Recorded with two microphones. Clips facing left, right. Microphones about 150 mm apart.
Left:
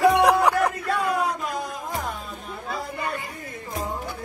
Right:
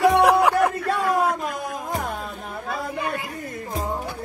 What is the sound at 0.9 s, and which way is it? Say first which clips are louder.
Music: right 3 dB; 45° right (ahead or behind).